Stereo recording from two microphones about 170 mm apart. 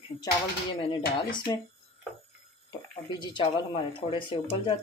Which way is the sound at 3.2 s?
25° left (ahead or behind).